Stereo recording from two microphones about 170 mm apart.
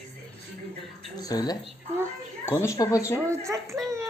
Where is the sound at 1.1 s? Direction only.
20° left (ahead or behind).